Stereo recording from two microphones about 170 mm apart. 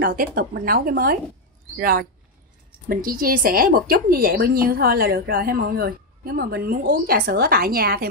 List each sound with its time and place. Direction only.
0.0 s a woman's voice: 60° right (ahead or behind)